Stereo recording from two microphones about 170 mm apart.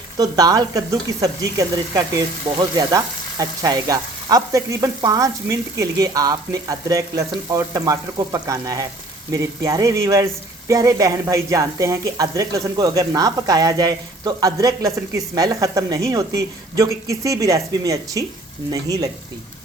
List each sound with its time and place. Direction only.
0.2 s speech: 20° right (ahead or behind)